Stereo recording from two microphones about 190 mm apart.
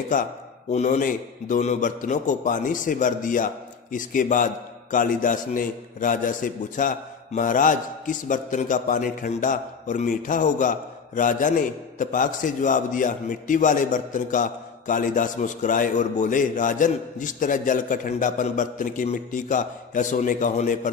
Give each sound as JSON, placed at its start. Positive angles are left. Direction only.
{"t": 0.7, "sound": "a man's voice", "side_deg": 40}